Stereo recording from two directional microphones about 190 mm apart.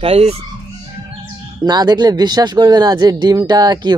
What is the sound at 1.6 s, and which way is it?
Speech, 20° right (ahead or behind).